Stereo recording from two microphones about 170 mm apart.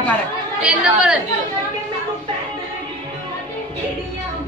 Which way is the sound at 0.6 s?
5° right (ahead or behind).